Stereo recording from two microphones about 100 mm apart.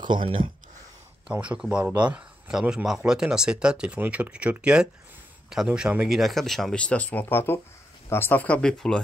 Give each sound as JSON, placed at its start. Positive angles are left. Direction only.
{"t": 0.0, "sound": "speech", "side_deg": -55}
{"t": 1.3, "sound": "speech", "side_deg": -15}